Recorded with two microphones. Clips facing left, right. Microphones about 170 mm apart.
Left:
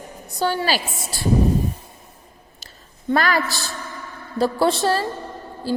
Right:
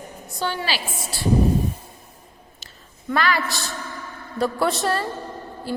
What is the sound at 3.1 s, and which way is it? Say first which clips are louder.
A woman's voice: left 3 dB; 40° left (ahead or behind).